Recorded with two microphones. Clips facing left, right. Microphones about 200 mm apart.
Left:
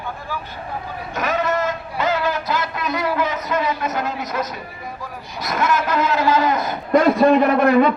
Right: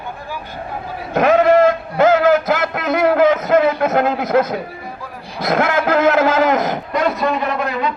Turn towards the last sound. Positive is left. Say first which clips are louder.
# left 7 dB
turn(degrees=55)  # may be behind; listen again after turning